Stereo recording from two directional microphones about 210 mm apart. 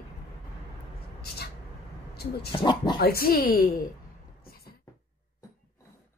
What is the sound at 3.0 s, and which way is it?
Speech, 45° left (ahead or behind).